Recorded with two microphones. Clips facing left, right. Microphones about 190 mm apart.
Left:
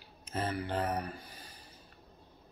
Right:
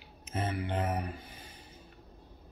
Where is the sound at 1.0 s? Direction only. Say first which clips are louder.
Right 1 dB; 20° right (ahead or behind).